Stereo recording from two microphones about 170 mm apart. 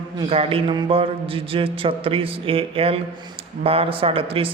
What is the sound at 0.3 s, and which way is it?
Speech, 35° right (ahead or behind).